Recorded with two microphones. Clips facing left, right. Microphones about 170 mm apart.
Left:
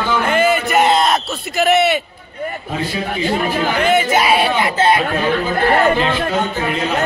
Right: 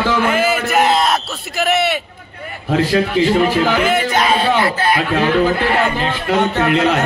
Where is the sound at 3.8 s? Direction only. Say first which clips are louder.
Left 1 dB; 5° left (ahead or behind); by 4.9 s 20° left (ahead or behind).